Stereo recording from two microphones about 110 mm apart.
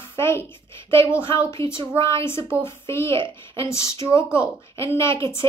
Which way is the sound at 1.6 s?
25° left (ahead or behind).